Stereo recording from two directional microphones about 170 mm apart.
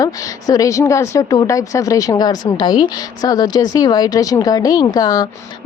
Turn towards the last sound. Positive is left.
turn(degrees=20)  # may be behind; listen again after turning